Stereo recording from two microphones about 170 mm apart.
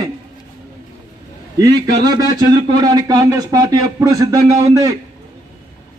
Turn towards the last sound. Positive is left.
turn(degrees=-20)  # may be behind; listen again after turning